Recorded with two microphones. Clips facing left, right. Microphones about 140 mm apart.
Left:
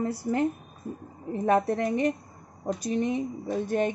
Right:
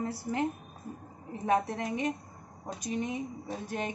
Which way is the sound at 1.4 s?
60° left (ahead or behind).